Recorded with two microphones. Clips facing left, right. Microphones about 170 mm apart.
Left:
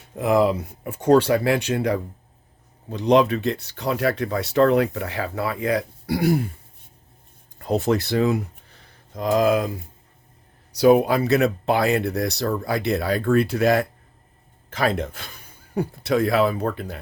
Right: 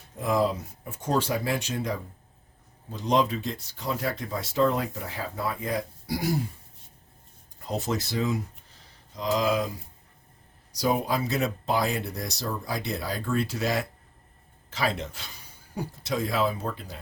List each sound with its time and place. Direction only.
0.2 s speech: 70° left (ahead or behind)
7.6 s speech: 60° left (ahead or behind)
10.8 s speech: 65° left (ahead or behind)